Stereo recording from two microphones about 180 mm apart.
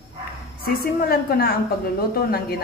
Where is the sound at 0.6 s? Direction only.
55° left (ahead or behind).